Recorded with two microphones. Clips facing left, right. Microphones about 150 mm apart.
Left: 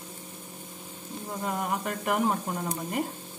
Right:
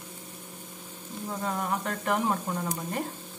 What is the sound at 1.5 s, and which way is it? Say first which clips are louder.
Speech: left 1 dB; 15° left (ahead or behind).